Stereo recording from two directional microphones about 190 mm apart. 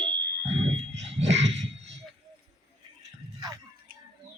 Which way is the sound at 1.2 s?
35° right (ahead or behind).